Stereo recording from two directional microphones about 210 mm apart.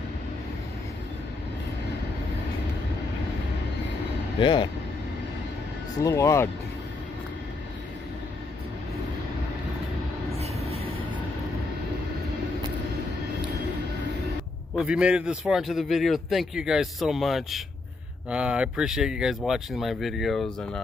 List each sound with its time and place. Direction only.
4.4 s speech: 20° left (ahead or behind)
6.0 s speech: 15° left (ahead or behind)
10.3 s train: 30° right (ahead or behind)
14.8 s a man's voice: 5° right (ahead or behind)